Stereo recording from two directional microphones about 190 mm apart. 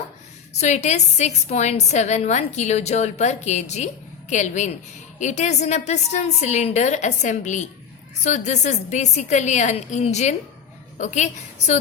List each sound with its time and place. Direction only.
0.6 s a woman's voice: 35° left (ahead or behind)